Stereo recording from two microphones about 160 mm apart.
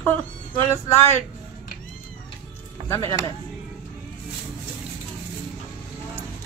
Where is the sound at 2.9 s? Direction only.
20° left (ahead or behind).